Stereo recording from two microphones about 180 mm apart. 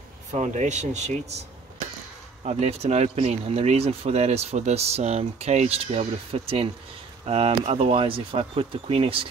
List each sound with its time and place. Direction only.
0.3 s speech: 40° right (ahead or behind)
2.4 s speech: 35° right (ahead or behind)